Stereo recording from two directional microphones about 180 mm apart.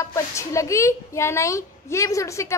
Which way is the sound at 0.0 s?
15° left (ahead or behind).